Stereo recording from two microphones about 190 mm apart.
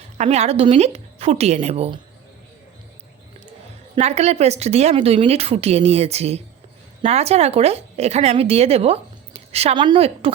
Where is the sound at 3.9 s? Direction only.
35° right (ahead or behind).